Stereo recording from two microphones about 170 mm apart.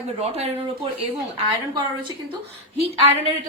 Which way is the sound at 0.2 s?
35° right (ahead or behind).